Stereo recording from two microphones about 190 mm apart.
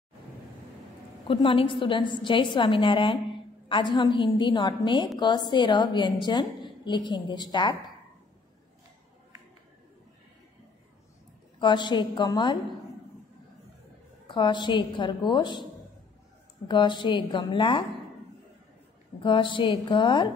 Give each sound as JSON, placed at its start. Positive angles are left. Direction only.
{"t": 1.2, "sound": "a woman's voice", "side_deg": 25}
{"t": 11.6, "sound": "a woman's voice", "side_deg": 25}
{"t": 14.2, "sound": "a woman's voice", "side_deg": 25}
{"t": 16.6, "sound": "a woman's voice", "side_deg": 25}
{"t": 19.2, "sound": "a woman's voice", "side_deg": 25}